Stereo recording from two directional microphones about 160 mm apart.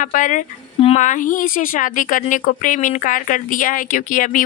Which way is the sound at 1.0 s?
55° left (ahead or behind).